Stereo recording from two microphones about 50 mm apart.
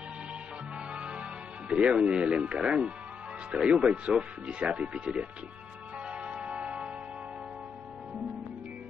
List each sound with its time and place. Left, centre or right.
1.7 s speech: right
6.0 s music: centre